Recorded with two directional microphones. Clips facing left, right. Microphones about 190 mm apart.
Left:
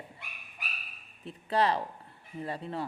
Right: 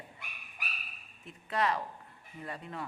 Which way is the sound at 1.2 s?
30° left (ahead or behind).